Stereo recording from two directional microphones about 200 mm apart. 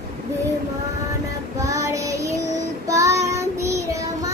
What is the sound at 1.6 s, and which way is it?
Child singing, 15° right (ahead or behind).